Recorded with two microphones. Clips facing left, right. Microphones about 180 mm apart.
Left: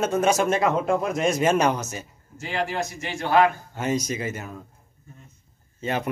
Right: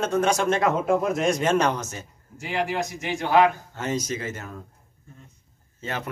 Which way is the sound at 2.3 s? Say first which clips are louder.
Right 1 dB; 15° right (ahead or behind).